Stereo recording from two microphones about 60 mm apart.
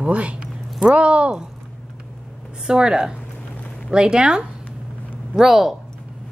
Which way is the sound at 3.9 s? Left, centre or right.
Centre.